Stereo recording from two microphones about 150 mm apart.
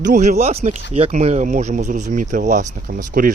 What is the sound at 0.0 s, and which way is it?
Speech, 55° right (ahead or behind).